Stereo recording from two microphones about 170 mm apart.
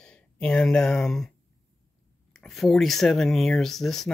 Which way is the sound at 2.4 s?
Centre (ahead or behind).